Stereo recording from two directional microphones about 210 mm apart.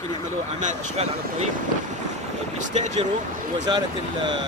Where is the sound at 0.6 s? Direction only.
30° right (ahead or behind).